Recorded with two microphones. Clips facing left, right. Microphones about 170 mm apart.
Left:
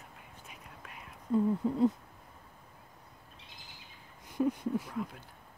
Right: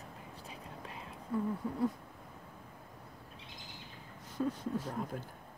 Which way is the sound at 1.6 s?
25° left (ahead or behind).